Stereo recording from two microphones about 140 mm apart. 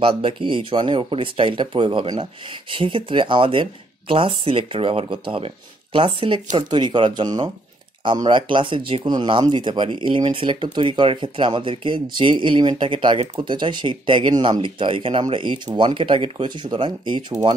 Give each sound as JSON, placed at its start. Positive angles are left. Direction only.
{"t": 0.0, "sound": "speech", "side_deg": -40}